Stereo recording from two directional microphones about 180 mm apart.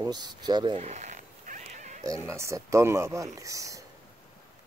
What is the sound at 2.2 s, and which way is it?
Speech, 15° right (ahead or behind).